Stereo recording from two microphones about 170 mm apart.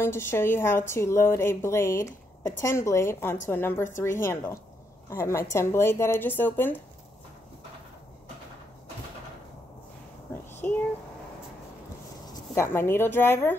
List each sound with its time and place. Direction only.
0.0 s a woman's voice: 15° left (ahead or behind)
10.3 s child singing: 10° left (ahead or behind)
12.3 s speech: 15° left (ahead or behind)